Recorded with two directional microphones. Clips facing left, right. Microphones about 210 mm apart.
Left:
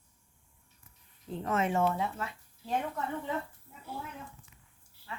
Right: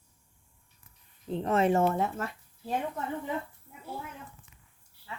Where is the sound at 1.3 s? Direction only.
25° right (ahead or behind); by 2.3 s 50° right (ahead or behind).